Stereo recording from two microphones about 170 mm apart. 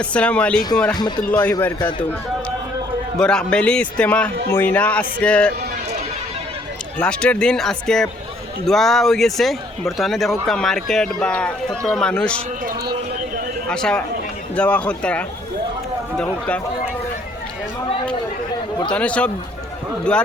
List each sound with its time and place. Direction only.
0.0 s speech: 5° left (ahead or behind)
0.9 s speech: 25° left (ahead or behind)
1.3 s speech: 10° left (ahead or behind)
3.2 s speech: 5° left (ahead or behind)
7.0 s speech: 5° left (ahead or behind)
13.7 s speech: 5° left (ahead or behind)
18.9 s speech: 5° left (ahead or behind)